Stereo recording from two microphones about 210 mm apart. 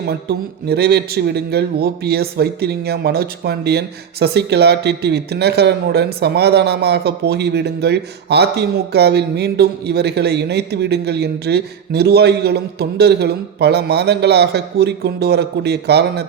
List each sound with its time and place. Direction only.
0.0 s a man's voice: 50° right (ahead or behind)